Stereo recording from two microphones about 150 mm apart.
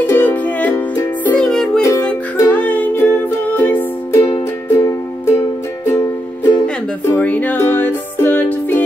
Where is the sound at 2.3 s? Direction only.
10° left (ahead or behind).